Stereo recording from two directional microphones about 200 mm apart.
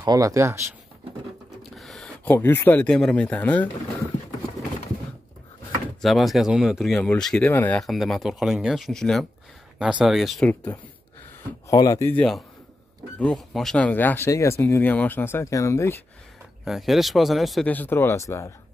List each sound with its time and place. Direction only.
0.0 s speech: 20° right (ahead or behind)
1.6 s speech: centre (ahead or behind)
5.9 s speech: centre (ahead or behind)
16.6 s speech: centre (ahead or behind)